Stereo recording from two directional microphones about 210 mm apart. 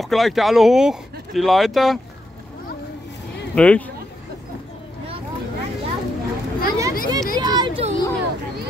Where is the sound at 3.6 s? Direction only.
5° left (ahead or behind).